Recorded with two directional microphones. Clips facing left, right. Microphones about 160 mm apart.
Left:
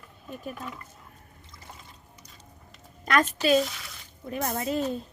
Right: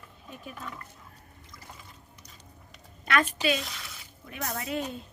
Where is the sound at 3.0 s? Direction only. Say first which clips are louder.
Left 3 dB; 40° left (ahead or behind).